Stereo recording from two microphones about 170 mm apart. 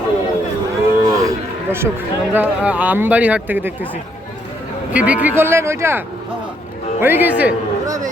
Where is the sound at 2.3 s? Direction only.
10° right (ahead or behind).